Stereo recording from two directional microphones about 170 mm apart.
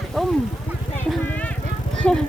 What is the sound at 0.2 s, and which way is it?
Vehicle, centre (ahead or behind).